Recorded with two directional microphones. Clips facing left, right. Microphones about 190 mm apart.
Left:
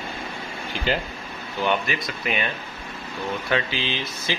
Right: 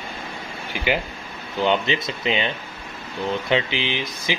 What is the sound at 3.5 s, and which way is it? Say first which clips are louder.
Speech: right 1 dB; 20° right (ahead or behind).